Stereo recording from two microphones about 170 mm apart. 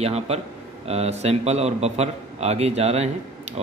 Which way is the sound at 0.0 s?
35° right (ahead or behind).